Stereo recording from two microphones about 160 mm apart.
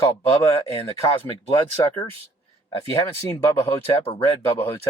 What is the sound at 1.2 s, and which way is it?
Speech, 20° left (ahead or behind).